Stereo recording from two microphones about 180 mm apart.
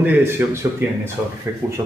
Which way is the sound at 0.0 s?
10° right (ahead or behind).